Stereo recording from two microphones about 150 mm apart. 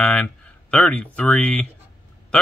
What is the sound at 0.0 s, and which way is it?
Speech, 10° left (ahead or behind).